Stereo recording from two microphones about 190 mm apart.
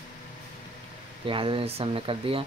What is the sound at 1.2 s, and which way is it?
Speech, 25° right (ahead or behind).